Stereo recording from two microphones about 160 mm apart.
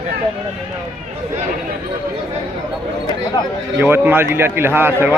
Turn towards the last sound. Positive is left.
turn(degrees=-15)  # may be behind; listen again after turning